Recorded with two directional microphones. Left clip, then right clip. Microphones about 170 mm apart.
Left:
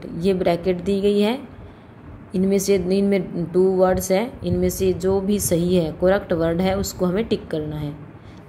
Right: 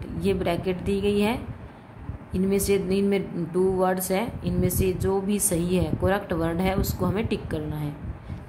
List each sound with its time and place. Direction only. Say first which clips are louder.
0.0 s a woman's voice: left 6 dB; 20° left (ahead or behind)